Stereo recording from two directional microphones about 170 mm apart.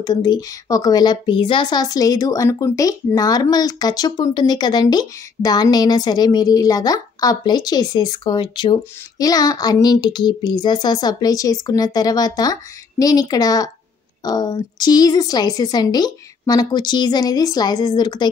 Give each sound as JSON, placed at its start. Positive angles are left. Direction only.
{"t": 0.0, "sound": "a woman's voice", "side_deg": 25}